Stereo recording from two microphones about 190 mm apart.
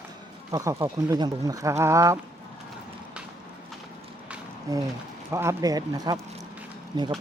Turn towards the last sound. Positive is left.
turn(degrees=-20)  # may be behind; listen again after turning